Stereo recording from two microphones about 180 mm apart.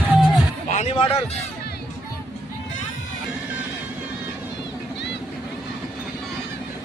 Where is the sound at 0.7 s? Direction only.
35° left (ahead or behind).